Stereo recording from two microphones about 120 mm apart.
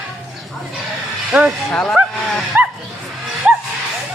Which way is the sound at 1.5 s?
5° left (ahead or behind).